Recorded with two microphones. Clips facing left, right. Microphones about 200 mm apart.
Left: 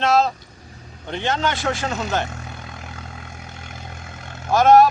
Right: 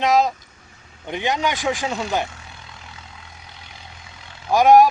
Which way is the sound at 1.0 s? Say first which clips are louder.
Even; 15° right (ahead or behind).